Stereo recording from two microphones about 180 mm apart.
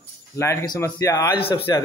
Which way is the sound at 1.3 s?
30° left (ahead or behind).